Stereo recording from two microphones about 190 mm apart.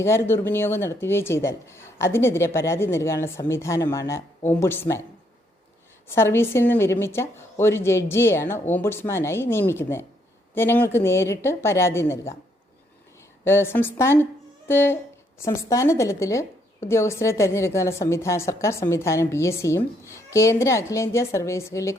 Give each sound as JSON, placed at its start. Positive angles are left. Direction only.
{"t": 0.0, "sound": "speech", "side_deg": 15}
{"t": 6.1, "sound": "speech", "side_deg": 15}
{"t": 13.4, "sound": "speech", "side_deg": 10}